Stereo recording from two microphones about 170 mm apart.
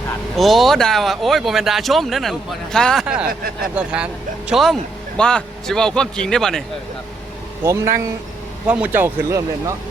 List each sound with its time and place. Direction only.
0.3 s speech: centre (ahead or behind)
7.6 s speech: 15° right (ahead or behind)